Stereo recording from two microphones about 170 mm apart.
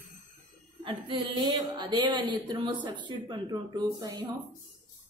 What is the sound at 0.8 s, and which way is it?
Speech, 30° right (ahead or behind).